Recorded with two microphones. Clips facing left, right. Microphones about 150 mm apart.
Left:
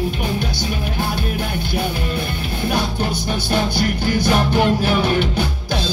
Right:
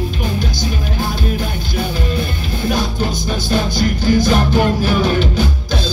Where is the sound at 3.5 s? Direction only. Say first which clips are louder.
Right 2 dB; 60° left (ahead or behind).